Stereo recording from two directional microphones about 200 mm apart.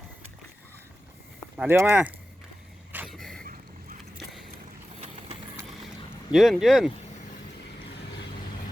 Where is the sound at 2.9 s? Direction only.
5° right (ahead or behind).